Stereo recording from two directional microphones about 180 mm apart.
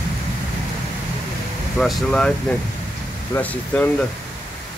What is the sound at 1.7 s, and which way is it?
Speech, 5° left (ahead or behind).